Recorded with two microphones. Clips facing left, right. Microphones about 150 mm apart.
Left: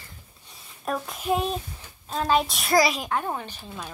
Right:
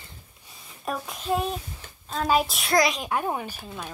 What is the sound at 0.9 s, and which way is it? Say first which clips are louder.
Speech: left 2 dB; centre (ahead or behind).